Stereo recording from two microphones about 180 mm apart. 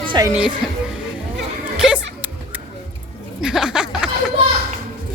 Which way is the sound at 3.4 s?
5° right (ahead or behind).